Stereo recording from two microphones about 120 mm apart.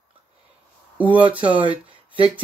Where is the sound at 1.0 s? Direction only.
10° right (ahead or behind).